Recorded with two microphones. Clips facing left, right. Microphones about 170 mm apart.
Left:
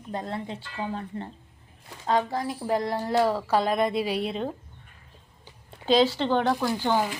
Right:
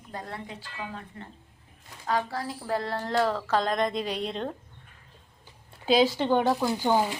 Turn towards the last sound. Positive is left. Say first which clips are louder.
# right 1 dB
turn(degrees=-15)  # may be behind; listen again after turning